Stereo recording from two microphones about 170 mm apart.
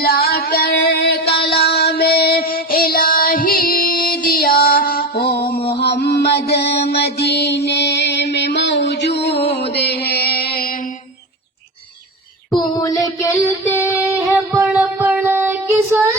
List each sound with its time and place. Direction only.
0.0 s female singing: 60° left (ahead or behind)
1.4 s child singing: 65° left (ahead or behind)
5.8 s mantra: 75° left (ahead or behind)
9.7 s a sound: 70° left (ahead or behind)
12.7 s a sound: 20° left (ahead or behind)
14.6 s child singing: 5° right (ahead or behind)